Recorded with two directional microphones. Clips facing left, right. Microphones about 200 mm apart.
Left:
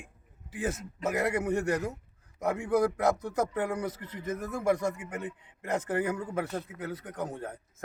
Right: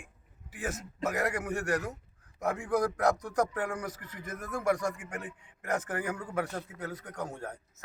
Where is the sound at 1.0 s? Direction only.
25° left (ahead or behind).